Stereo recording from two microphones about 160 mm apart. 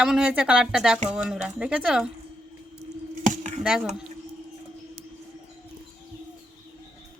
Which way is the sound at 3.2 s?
50° right (ahead or behind).